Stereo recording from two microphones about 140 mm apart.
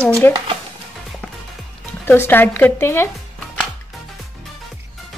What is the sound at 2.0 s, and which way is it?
Speech, 15° left (ahead or behind).